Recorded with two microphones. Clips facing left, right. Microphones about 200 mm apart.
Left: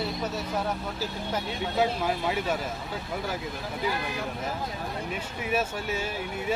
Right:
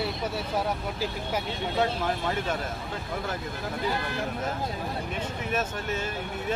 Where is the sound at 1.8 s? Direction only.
10° left (ahead or behind).